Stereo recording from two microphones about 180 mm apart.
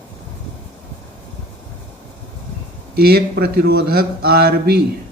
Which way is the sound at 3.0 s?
60° right (ahead or behind).